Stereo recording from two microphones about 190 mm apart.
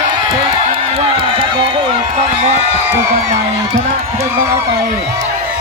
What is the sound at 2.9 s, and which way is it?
Music, 15° right (ahead or behind).